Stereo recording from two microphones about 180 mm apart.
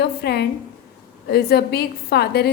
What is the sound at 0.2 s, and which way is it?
A woman's voice, 65° left (ahead or behind).